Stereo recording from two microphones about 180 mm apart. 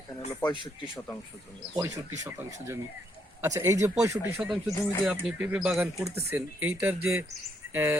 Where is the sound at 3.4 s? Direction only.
15° right (ahead or behind).